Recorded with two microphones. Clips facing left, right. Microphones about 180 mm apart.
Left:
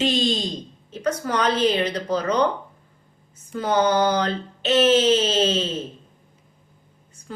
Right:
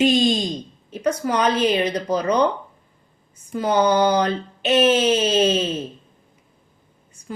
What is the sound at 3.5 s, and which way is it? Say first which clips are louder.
Speech: right 2 dB; 15° right (ahead or behind).